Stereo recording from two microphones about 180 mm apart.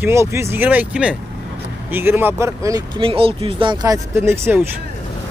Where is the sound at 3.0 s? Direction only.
30° right (ahead or behind); by 4.6 s 15° right (ahead or behind).